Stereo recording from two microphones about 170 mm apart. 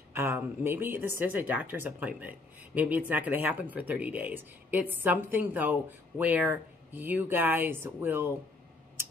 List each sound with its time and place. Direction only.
0.1 s a woman's voice: 15° right (ahead or behind)